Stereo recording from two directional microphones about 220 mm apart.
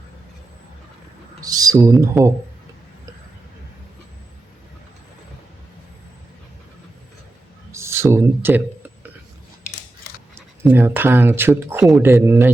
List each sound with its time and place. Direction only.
1.4 s speech: 15° right (ahead or behind)
7.7 s a sound: 10° right (ahead or behind)
10.7 s speech: 10° right (ahead or behind)